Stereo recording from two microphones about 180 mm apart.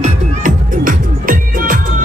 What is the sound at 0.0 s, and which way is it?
Music, 45° right (ahead or behind).